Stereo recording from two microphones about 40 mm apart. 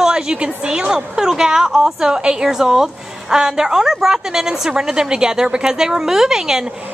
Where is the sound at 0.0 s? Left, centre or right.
Centre.